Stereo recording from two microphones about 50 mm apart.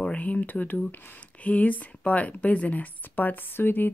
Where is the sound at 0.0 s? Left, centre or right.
Left.